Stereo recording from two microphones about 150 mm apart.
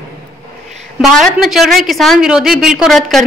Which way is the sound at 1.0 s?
Centre (ahead or behind).